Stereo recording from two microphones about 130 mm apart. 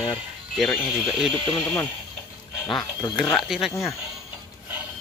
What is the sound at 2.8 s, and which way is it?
Speech, 30° left (ahead or behind).